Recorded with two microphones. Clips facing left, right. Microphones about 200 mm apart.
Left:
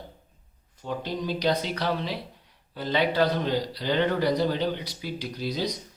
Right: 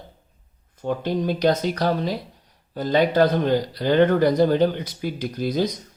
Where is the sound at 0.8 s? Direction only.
50° right (ahead or behind).